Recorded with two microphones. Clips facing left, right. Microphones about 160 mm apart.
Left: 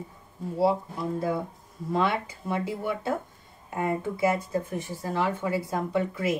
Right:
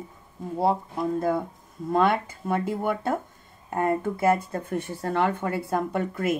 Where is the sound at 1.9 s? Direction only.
50° right (ahead or behind).